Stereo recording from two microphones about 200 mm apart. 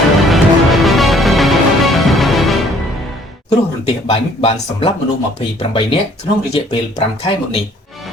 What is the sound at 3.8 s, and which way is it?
Speech, 30° left (ahead or behind).